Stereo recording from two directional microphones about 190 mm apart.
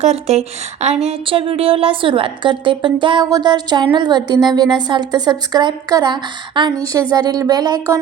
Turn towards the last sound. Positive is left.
turn(degrees=-20)  # may be behind; listen again after turning